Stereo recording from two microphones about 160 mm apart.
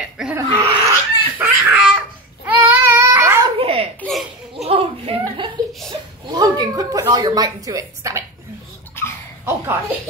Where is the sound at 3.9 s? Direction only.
5° left (ahead or behind).